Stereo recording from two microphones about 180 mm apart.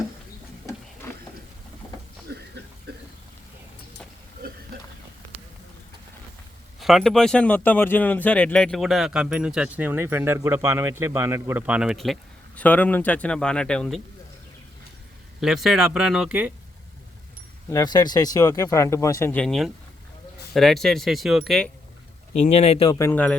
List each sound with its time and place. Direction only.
1.0 s a sound: 15° left (ahead or behind)
2.3 s a sound: 65° right (ahead or behind)
6.7 s speech: centre (ahead or behind)
15.4 s speech: centre (ahead or behind)
17.7 s speech: 20° left (ahead or behind); by 21.7 s centre (ahead or behind)
22.4 s speech: 35° left (ahead or behind)
22.9 s speech: 15° left (ahead or behind)